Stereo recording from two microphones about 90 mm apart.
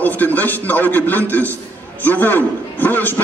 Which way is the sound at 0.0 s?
20° left (ahead or behind).